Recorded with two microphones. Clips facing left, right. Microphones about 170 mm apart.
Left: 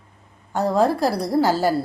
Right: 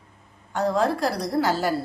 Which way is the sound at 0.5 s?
35° left (ahead or behind).